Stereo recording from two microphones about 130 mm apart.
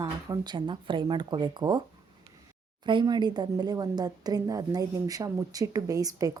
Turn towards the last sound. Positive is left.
turn(degrees=-30)  # may be behind; listen again after turning